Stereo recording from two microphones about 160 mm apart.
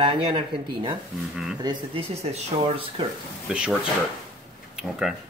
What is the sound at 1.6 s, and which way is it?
Speech, 30° right (ahead or behind).